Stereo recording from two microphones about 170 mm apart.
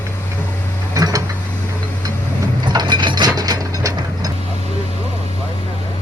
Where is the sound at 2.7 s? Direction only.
25° right (ahead or behind).